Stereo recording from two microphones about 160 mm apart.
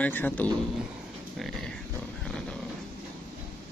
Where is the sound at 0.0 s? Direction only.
10° left (ahead or behind).